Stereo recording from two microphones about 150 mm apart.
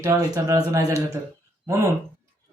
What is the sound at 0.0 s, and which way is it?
Speech, 20° right (ahead or behind).